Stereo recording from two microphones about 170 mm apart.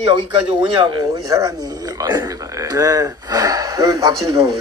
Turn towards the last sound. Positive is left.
turn(degrees=-25)  # may be behind; listen again after turning